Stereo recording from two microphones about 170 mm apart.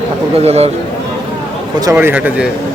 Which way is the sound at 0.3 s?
40° right (ahead or behind).